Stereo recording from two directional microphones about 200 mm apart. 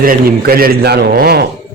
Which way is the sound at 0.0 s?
45° right (ahead or behind).